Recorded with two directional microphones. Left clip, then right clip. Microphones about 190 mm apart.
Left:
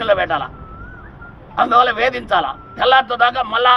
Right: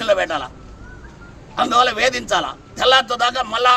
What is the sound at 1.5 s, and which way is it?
A man's voice, 15° right (ahead or behind).